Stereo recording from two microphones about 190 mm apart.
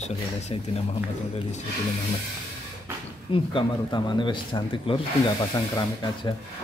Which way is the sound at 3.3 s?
25° left (ahead or behind).